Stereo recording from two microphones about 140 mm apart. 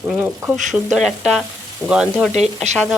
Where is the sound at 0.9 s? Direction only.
Centre (ahead or behind).